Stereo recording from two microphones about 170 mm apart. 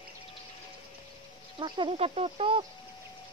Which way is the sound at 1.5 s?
30° right (ahead or behind).